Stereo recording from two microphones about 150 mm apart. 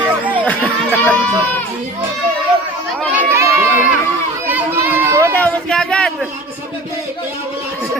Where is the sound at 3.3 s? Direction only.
20° right (ahead or behind).